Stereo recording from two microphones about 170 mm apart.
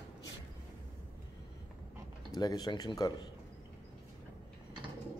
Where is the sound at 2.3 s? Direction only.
20° left (ahead or behind).